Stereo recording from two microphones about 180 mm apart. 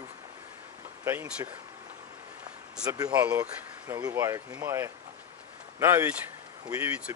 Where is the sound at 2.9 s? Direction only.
15° right (ahead or behind).